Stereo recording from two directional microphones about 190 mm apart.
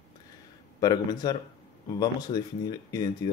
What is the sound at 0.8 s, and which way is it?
Speech, 20° left (ahead or behind).